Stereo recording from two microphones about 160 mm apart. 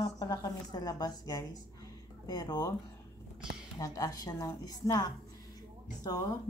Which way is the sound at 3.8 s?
20° left (ahead or behind).